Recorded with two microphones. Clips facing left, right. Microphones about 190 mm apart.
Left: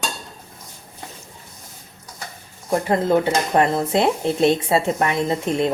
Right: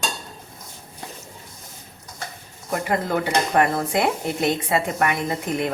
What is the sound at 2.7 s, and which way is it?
Speech, 25° left (ahead or behind).